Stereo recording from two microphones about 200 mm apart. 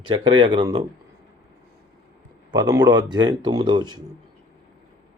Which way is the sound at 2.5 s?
20° right (ahead or behind).